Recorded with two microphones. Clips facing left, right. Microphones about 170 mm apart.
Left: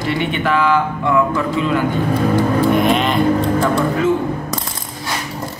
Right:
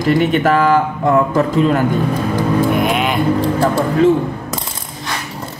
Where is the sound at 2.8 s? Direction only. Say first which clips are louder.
Left 1 dB; 5° right (ahead or behind).